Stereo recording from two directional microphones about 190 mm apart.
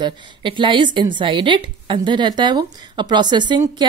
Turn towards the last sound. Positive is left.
turn(degrees=-25)  # may be behind; listen again after turning